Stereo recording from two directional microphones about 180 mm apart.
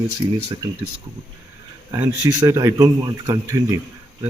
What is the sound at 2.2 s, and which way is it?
Speech, 20° right (ahead or behind).